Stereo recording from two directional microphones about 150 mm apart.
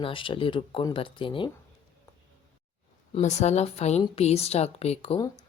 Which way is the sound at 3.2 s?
50° left (ahead or behind).